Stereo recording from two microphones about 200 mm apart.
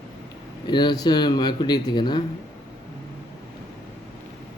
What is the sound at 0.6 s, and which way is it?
Speech, 20° left (ahead or behind).